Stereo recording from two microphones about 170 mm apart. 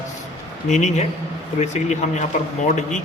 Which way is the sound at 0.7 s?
45° left (ahead or behind).